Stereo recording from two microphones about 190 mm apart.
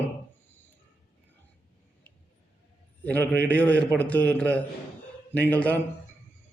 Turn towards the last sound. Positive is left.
turn(degrees=10)  # may be behind; listen again after turning